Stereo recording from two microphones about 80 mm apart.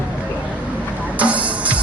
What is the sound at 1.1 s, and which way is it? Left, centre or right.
Music, centre.